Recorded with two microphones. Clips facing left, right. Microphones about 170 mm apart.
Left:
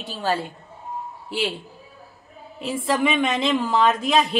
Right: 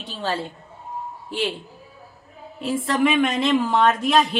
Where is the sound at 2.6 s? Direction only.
Centre (ahead or behind).